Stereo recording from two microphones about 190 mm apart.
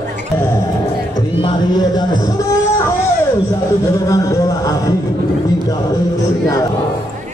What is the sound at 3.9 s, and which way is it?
Music, 20° left (ahead or behind).